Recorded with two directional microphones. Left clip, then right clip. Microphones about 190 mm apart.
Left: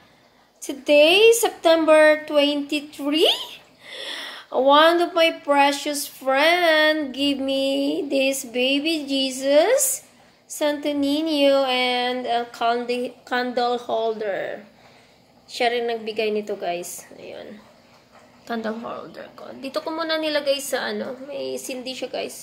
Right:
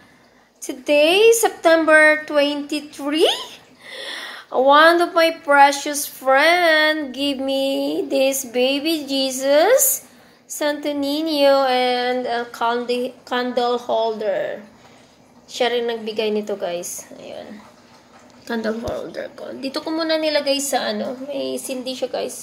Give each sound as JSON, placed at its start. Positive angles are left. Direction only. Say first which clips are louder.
{"t": 0.6, "sound": "a woman's voice", "louder": "left 1 dB", "side_deg": 5}
{"t": 18.5, "sound": "a woman's voice", "louder": "right 4 dB", "side_deg": 10}